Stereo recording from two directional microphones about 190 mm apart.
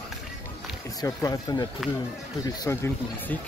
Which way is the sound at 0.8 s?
20° left (ahead or behind).